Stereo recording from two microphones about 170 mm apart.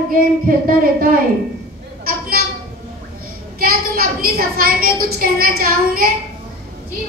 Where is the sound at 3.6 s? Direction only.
60° right (ahead or behind).